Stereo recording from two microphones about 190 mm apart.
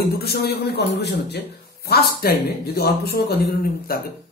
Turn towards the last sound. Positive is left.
turn(degrees=50)  # may be behind; listen again after turning